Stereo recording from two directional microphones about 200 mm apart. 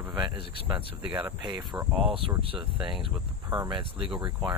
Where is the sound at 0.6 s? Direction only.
25° right (ahead or behind).